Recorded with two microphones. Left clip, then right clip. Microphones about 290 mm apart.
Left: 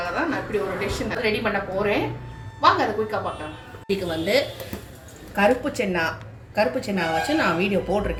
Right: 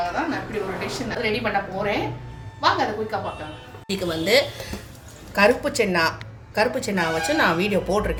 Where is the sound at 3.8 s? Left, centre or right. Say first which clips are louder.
Even; right.